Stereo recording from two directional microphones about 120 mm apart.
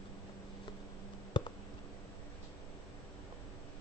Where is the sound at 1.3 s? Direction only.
40° left (ahead or behind).